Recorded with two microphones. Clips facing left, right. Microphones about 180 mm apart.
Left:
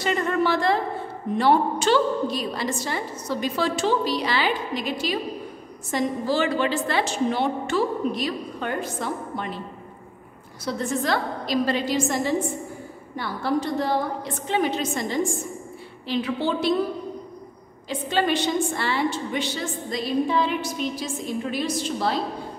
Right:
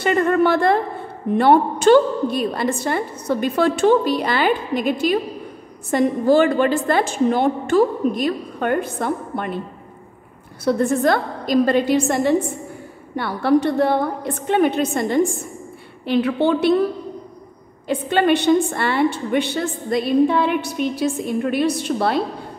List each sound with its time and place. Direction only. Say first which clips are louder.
0.0 s a woman's voice: right 6 dB; 55° right (ahead or behind)
10.6 s a woman's voice: right 9 dB; 55° right (ahead or behind)
17.8 s a woman's voice: right 6 dB; 60° right (ahead or behind)